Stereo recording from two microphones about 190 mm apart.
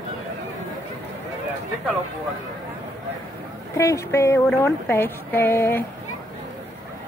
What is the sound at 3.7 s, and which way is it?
Speech, 15° left (ahead or behind).